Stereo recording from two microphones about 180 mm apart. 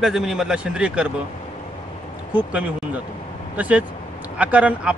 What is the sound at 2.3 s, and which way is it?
A man's voice, 10° right (ahead or behind).